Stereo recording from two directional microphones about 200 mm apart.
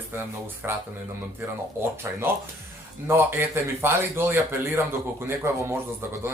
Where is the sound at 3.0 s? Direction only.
10° right (ahead or behind).